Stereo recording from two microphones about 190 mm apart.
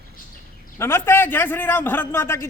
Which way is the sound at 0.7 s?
15° left (ahead or behind).